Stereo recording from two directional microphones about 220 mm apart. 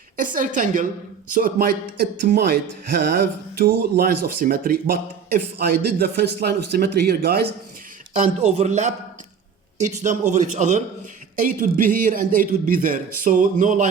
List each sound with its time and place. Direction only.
0.2 s a man's voice: 35° right (ahead or behind)
8.4 s a man's voice: 30° right (ahead or behind)